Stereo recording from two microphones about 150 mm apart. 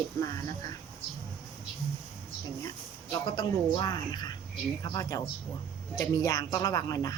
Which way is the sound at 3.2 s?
30° left (ahead or behind).